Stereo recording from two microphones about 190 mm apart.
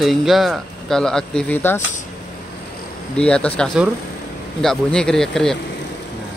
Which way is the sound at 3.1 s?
5° left (ahead or behind).